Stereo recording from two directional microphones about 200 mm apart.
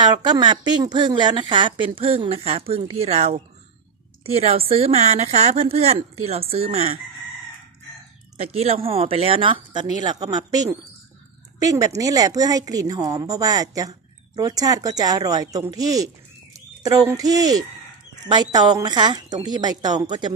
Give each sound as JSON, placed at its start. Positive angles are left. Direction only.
{"t": 0.0, "sound": "a woman's voice", "side_deg": -20}
{"t": 8.4, "sound": "a woman's voice", "side_deg": -30}